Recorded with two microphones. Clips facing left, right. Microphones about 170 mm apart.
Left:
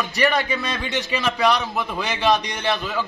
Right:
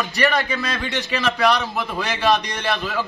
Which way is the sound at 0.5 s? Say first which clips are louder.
Even; 25° left (ahead or behind).